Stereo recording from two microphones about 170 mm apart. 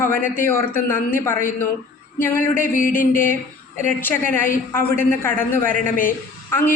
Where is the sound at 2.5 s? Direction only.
55° left (ahead or behind).